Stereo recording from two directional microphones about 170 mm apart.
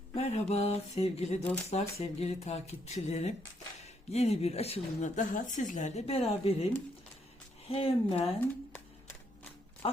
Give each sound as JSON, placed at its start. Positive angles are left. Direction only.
{"t": 0.1, "sound": "speech", "side_deg": 40}
{"t": 7.7, "sound": "speech", "side_deg": 35}
{"t": 8.7, "sound": "a sound", "side_deg": 15}